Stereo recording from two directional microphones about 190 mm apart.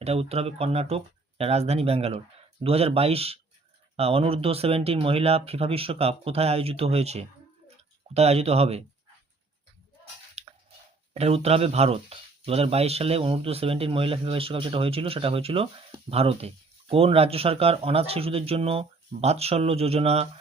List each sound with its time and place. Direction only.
0.0 s speech: 35° right (ahead or behind)
10.4 s chewing: 35° right (ahead or behind)
11.1 s speech: 30° right (ahead or behind)